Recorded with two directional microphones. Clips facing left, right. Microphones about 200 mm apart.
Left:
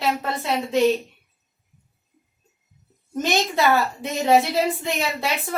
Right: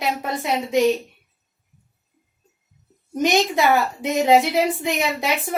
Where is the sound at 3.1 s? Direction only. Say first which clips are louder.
Right 3 dB; 20° right (ahead or behind).